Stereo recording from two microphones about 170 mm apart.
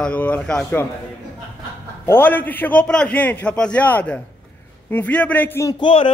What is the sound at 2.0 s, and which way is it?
A man's voice, 10° left (ahead or behind).